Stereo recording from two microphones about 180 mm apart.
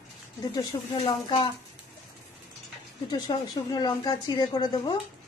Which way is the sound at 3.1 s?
20° left (ahead or behind).